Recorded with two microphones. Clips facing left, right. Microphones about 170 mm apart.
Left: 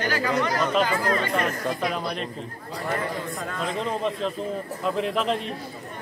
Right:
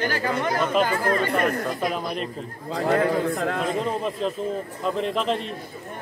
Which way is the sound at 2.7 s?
70° right (ahead or behind).